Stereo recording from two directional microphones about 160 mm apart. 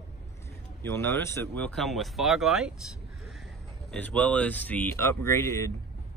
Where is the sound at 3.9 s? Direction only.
10° left (ahead or behind).